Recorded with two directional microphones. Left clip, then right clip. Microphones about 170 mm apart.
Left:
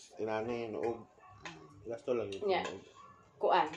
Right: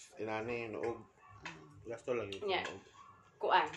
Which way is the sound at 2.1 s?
10° right (ahead or behind).